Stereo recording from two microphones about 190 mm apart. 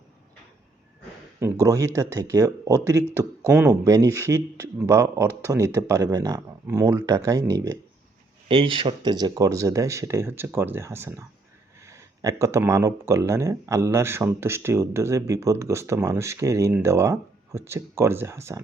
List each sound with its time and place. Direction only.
1.6 s speech: 15° right (ahead or behind)